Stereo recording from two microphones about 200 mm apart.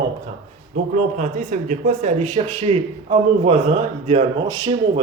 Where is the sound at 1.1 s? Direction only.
40° right (ahead or behind).